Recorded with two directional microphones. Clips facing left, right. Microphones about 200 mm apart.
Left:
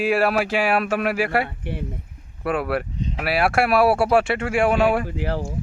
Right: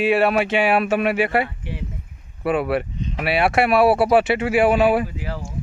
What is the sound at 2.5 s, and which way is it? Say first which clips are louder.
Speech: right 3 dB; centre (ahead or behind).